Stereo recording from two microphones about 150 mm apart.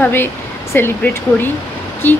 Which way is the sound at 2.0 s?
15° left (ahead or behind).